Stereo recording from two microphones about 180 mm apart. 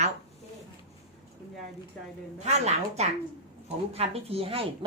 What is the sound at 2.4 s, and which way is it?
Speech, 35° right (ahead or behind).